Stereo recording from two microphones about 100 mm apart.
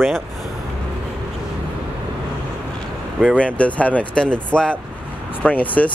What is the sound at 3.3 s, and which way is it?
Speech, 15° left (ahead or behind).